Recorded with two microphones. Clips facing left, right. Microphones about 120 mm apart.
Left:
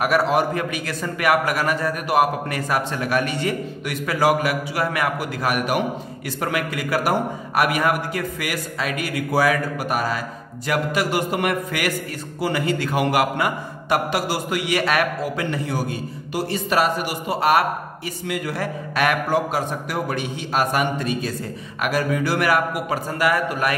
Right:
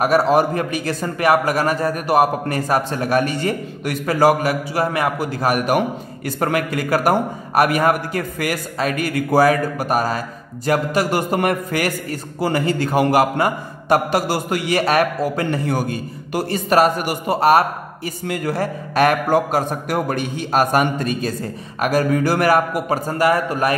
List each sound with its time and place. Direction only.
0.0 s a man's voice: 35° right (ahead or behind)